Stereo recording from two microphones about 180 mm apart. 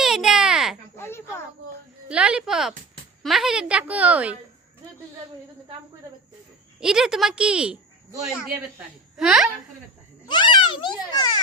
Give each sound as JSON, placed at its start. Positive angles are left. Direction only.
{"t": 0.0, "sound": "a sound", "side_deg": 0}
{"t": 0.9, "sound": "a sound", "side_deg": 15}
{"t": 2.0, "sound": "a woman's voice", "side_deg": -5}
{"t": 6.7, "sound": "a woman's voice", "side_deg": -5}
{"t": 9.1, "sound": "a woman's voice", "side_deg": 0}
{"t": 10.2, "sound": "a child's voice", "side_deg": 25}